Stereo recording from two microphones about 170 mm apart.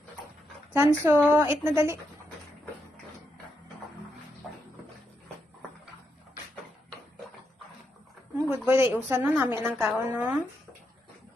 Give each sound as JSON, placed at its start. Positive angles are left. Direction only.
{"t": 0.7, "sound": "a woman's voice", "side_deg": -10}
{"t": 8.4, "sound": "a woman's voice", "side_deg": -15}